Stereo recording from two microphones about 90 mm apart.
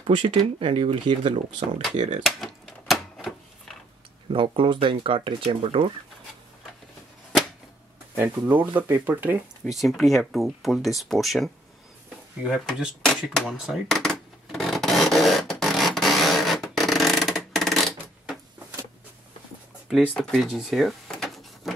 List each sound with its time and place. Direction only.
0.0 s speech: 70° right (ahead or behind)
0.6 s speech: 90° right
2.2 s a sound: centre (ahead or behind)
4.3 s speech: 70° right (ahead or behind); by 5.9 s 90° right
8.2 s speech: 20° right (ahead or behind)
9.7 s speech: centre (ahead or behind)
13.8 s a sound: 5° left (ahead or behind)
20.2 s speech: 10° left (ahead or behind)
20.4 s drawer open or close: 5° right (ahead or behind)